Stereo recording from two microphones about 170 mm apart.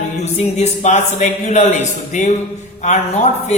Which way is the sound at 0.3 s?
45° left (ahead or behind).